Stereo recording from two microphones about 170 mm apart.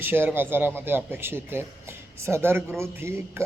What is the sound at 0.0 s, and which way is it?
A man's voice, 10° right (ahead or behind).